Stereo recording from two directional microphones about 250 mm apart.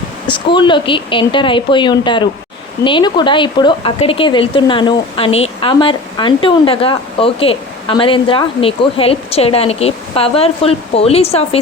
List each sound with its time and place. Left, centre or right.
0.3 s speech: centre